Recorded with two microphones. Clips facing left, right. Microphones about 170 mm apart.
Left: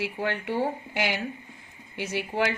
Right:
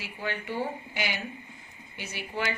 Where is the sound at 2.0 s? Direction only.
75° left (ahead or behind).